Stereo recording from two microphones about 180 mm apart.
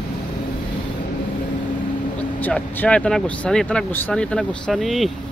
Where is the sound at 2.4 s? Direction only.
10° left (ahead or behind).